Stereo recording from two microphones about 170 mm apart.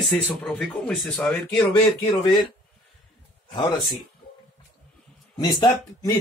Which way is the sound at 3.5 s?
30° left (ahead or behind).